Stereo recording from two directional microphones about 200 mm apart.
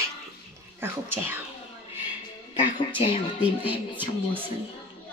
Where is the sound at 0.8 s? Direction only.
10° right (ahead or behind).